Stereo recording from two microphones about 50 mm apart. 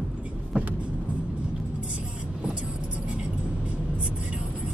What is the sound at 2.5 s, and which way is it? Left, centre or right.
Vehicle, right.